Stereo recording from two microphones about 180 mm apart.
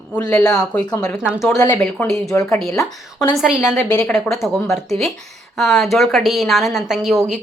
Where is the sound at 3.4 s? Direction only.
5° right (ahead or behind).